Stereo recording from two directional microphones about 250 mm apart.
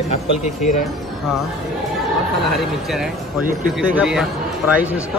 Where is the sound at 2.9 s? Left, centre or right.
Centre.